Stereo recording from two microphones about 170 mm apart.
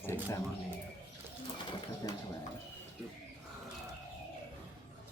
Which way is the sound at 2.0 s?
20° left (ahead or behind).